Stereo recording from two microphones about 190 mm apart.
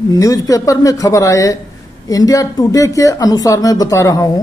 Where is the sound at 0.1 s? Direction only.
20° left (ahead or behind).